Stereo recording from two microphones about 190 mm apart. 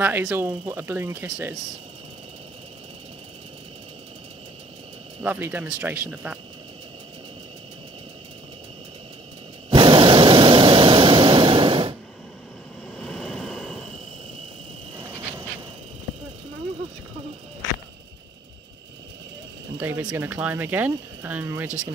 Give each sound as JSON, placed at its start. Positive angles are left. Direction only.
{"t": 0.0, "sound": "speech", "side_deg": -10}
{"t": 5.2, "sound": "speech", "side_deg": -10}
{"t": 9.7, "sound": "vehicle", "side_deg": -25}
{"t": 12.9, "sound": "vehicle", "side_deg": 0}
{"t": 15.0, "sound": "insect", "side_deg": -15}
{"t": 19.8, "sound": "speech", "side_deg": -10}